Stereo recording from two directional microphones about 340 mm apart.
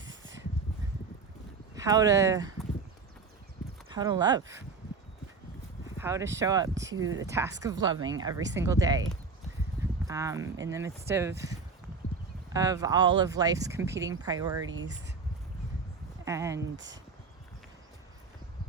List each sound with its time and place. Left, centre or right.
0.0 s a sound: right
1.7 s speech: centre
3.9 s speech: centre
6.0 s speech: centre
10.1 s speech: centre
14.7 s speech: right
16.2 s speech: centre
16.6 s speech: right